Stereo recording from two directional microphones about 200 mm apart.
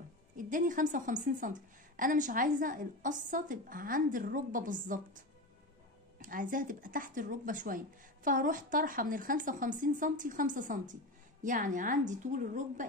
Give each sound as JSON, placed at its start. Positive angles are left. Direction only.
{"t": 0.4, "sound": "a woman's voice", "side_deg": -40}